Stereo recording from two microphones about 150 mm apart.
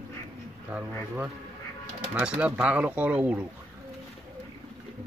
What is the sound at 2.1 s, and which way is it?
Speech, 10° right (ahead or behind).